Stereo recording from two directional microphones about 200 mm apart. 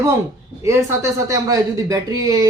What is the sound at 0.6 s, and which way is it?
Speech, 15° right (ahead or behind).